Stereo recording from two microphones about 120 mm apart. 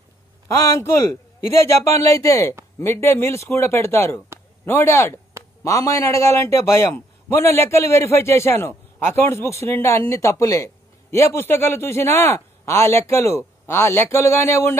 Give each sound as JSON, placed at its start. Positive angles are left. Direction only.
{"t": 0.6, "sound": "a man's voice", "side_deg": 20}